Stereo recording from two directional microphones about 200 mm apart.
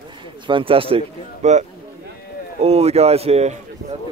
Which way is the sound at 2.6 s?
30° right (ahead or behind).